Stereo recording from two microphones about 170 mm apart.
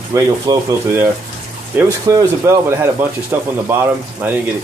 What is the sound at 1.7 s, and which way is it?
Speech, 10° right (ahead or behind).